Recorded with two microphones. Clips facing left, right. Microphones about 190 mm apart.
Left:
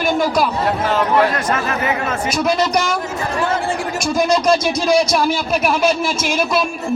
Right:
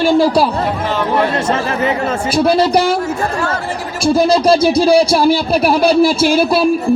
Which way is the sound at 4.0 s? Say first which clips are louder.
Right 6 dB; 30° right (ahead or behind).